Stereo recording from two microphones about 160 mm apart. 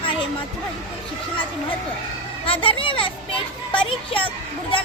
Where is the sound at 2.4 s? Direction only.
35° left (ahead or behind).